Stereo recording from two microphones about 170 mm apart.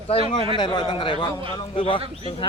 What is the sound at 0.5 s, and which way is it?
A man's voice, 25° left (ahead or behind).